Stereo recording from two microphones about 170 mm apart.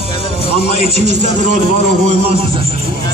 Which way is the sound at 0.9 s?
40° right (ahead or behind).